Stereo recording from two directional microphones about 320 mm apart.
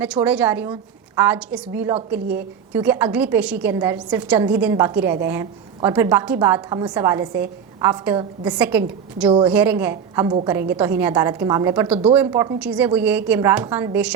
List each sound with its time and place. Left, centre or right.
0.0 s a woman's voice: centre